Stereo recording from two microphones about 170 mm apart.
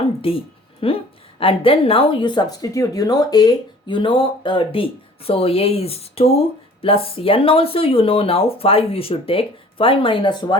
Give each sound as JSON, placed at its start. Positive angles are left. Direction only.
{"t": 0.2, "sound": "speech", "side_deg": 35}